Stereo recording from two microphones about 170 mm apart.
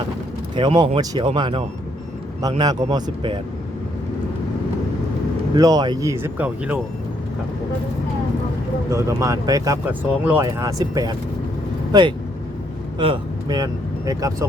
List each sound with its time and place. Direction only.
0.5 s speech: 30° right (ahead or behind)
5.5 s speech: 20° right (ahead or behind)
8.9 s speech: 20° right (ahead or behind)
13.6 s speech: 20° right (ahead or behind)